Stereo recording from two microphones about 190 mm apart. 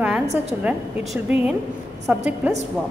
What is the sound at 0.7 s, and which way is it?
A woman's voice, 5° right (ahead or behind).